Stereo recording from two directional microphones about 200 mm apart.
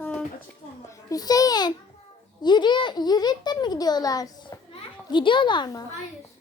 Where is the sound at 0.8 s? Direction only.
15° left (ahead or behind).